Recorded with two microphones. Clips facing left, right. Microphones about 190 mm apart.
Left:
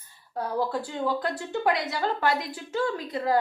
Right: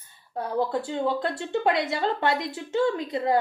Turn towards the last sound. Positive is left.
turn(degrees=-25)  # may be behind; listen again after turning